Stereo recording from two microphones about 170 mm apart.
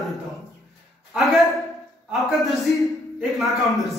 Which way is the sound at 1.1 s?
Centre (ahead or behind).